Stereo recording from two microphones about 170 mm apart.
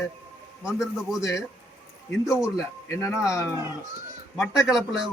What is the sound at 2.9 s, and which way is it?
Speech, 20° left (ahead or behind).